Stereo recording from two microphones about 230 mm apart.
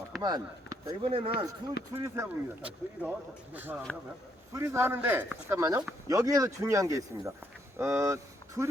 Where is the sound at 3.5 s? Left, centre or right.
Centre.